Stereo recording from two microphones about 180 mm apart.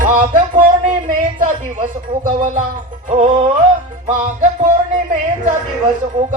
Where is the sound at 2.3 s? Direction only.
50° right (ahead or behind).